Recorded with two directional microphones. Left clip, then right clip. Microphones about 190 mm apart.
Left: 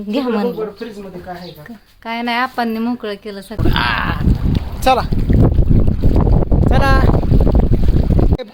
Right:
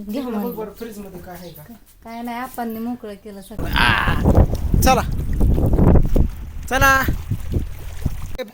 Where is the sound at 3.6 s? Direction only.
10° right (ahead or behind).